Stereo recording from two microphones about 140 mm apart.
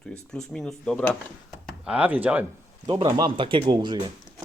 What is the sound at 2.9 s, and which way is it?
Speech, 35° right (ahead or behind).